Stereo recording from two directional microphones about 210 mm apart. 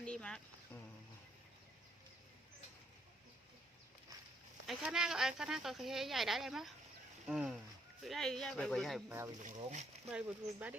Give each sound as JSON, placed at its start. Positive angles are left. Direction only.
{"t": 0.0, "sound": "a sound", "side_deg": 5}
{"t": 4.6, "sound": "speech", "side_deg": 0}
{"t": 9.0, "sound": "speech", "side_deg": -10}
{"t": 9.4, "sound": "speech", "side_deg": -35}
{"t": 10.1, "sound": "speech", "side_deg": -5}